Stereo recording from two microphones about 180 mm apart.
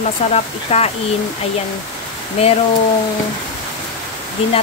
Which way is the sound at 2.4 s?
35° left (ahead or behind).